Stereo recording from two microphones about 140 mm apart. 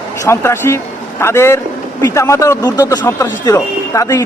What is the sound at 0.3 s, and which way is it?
A man's voice, 15° left (ahead or behind).